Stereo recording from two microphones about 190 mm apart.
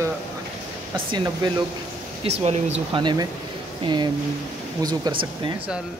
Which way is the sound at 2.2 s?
35° right (ahead or behind).